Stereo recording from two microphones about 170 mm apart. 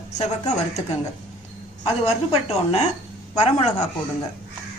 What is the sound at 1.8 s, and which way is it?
A woman's voice, 40° left (ahead or behind).